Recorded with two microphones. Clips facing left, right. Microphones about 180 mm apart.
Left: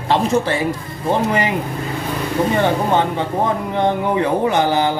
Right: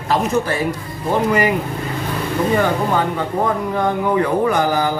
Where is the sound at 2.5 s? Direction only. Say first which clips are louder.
Left 1 dB; 25° left (ahead or behind).